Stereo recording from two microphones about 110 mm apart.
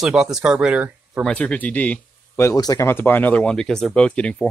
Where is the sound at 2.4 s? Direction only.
30° left (ahead or behind).